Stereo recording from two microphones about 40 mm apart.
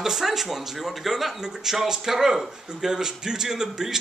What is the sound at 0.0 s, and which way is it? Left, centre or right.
Speech, centre.